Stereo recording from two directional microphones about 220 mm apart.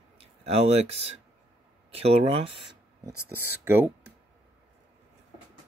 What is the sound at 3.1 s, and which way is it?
Speech, 90° right.